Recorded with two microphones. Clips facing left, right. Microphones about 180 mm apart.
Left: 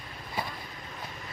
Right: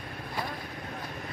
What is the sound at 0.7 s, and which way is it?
Vehicle, 60° right (ahead or behind).